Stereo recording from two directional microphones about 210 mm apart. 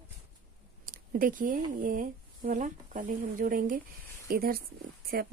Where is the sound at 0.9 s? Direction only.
40° right (ahead or behind).